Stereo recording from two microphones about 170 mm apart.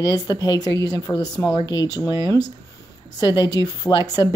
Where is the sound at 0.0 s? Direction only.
20° left (ahead or behind).